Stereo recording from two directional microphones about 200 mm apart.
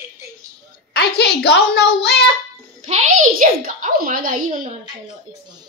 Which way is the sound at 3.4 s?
40° right (ahead or behind).